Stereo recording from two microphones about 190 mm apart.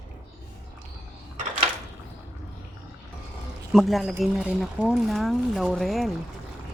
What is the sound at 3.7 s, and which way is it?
Speech, centre (ahead or behind).